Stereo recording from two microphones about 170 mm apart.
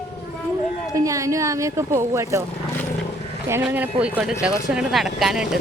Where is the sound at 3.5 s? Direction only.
10° right (ahead or behind).